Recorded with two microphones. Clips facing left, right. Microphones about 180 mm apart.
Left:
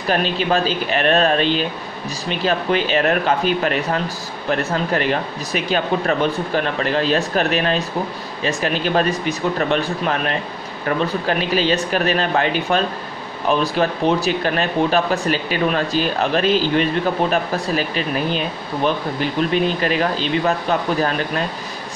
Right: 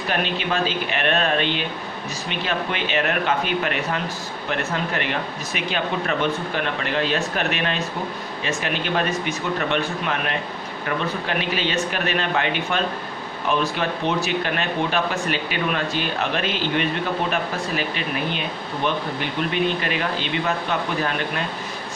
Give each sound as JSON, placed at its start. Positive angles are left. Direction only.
{"t": 0.1, "sound": "speech", "side_deg": 35}
{"t": 19.5, "sound": "speech", "side_deg": 35}